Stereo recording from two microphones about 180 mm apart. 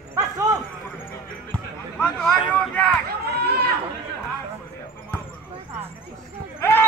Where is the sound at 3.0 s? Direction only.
60° right (ahead or behind).